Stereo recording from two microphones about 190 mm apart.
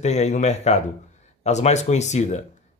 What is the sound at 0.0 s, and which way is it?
A man's voice, 35° left (ahead or behind).